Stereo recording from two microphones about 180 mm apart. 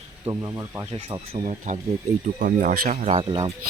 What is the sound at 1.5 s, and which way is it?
Speech, 45° right (ahead or behind).